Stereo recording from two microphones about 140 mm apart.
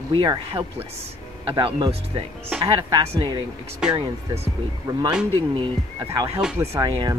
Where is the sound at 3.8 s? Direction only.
5° right (ahead or behind).